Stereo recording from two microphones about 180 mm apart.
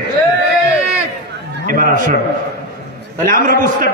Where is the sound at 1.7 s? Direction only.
50° right (ahead or behind).